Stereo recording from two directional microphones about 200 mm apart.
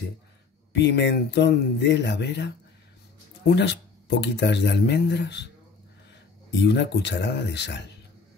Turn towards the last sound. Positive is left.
turn(degrees=60)  # may be behind; listen again after turning